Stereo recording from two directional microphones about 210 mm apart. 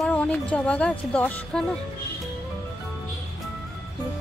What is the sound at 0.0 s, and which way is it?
Speech, 5° left (ahead or behind).